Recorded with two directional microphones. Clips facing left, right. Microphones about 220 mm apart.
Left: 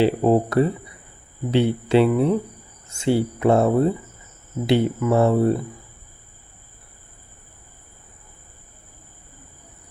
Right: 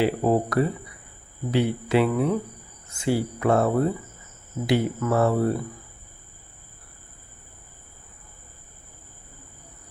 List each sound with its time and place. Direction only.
0.0 s speech: 25° left (ahead or behind)